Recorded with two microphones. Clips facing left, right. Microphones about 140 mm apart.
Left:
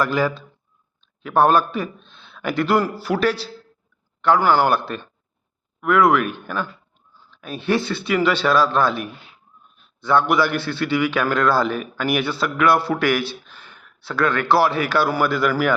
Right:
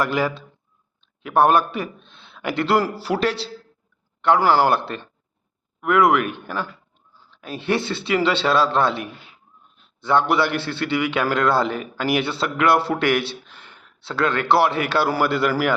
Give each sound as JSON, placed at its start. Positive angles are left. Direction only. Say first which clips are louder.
{"t": 0.0, "sound": "a man's voice", "louder": "left 1 dB", "side_deg": -25}